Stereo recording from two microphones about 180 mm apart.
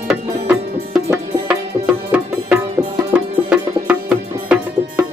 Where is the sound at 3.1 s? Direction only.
5° right (ahead or behind).